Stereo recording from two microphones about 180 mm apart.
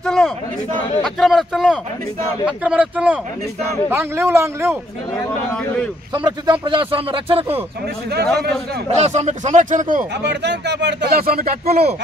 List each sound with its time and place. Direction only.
0.0 s a sound: centre (ahead or behind)
1.2 s speech: centre (ahead or behind)
6.1 s speech: 25° right (ahead or behind)
8.9 s speech: 40° right (ahead or behind)
10.2 s speech: 70° right (ahead or behind)